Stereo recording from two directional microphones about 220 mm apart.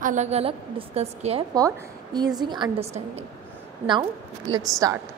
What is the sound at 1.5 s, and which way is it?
A woman's voice, 15° right (ahead or behind).